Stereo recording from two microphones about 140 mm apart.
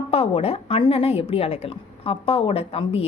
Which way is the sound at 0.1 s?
45° left (ahead or behind).